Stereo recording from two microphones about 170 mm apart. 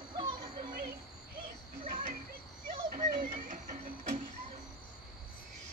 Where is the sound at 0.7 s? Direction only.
55° right (ahead or behind).